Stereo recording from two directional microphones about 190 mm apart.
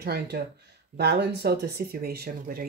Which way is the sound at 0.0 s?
55° right (ahead or behind).